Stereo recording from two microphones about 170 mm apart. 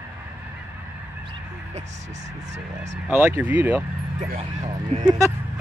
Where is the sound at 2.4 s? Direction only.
40° right (ahead or behind).